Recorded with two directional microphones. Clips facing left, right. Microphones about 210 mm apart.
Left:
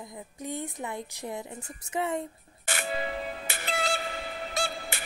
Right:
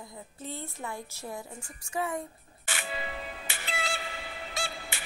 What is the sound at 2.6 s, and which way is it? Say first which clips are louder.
Music: left 5 dB; 45° left (ahead or behind).